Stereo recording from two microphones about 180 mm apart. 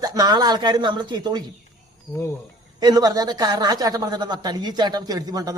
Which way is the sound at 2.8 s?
20° right (ahead or behind).